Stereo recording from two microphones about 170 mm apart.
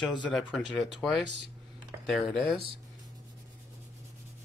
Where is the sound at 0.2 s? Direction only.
5° left (ahead or behind).